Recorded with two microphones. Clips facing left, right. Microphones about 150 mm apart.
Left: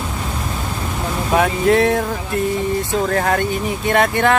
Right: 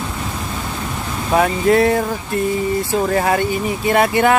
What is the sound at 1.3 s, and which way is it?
Speech, centre (ahead or behind).